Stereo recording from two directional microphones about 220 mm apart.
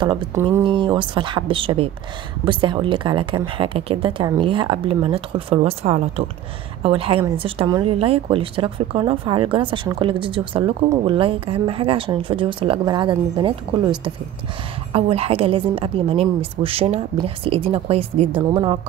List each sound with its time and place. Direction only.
0.0 s a woman's voice: 20° right (ahead or behind)